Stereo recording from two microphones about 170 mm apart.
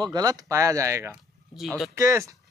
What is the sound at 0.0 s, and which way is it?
Speech, 20° right (ahead or behind).